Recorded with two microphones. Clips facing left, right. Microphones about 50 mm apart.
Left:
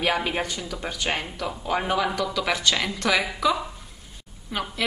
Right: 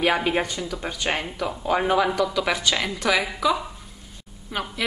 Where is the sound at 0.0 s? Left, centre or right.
Centre.